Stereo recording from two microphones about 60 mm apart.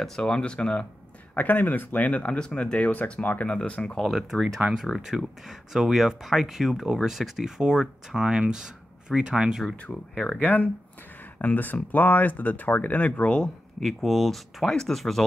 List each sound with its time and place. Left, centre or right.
0.0 s speech: centre
1.3 s speech: left
4.0 s speech: centre
9.8 s speech: left
13.7 s speech: centre